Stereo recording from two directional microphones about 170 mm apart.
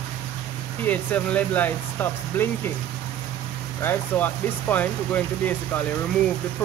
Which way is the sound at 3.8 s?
10° left (ahead or behind).